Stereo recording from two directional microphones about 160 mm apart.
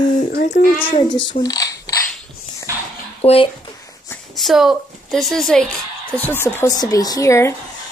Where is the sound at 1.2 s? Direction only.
30° left (ahead or behind).